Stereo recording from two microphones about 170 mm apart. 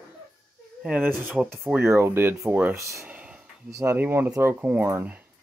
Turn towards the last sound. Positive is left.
turn(degrees=-10)  # may be behind; listen again after turning